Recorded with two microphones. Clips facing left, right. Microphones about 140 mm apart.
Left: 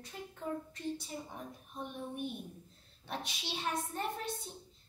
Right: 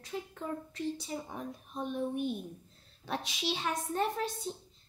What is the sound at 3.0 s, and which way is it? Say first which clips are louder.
Speech: right 5 dB; 90° right.